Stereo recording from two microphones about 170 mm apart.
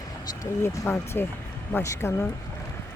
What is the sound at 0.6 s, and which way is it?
Speech, 15° left (ahead or behind).